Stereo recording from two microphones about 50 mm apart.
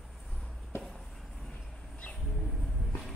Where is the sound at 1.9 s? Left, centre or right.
Left.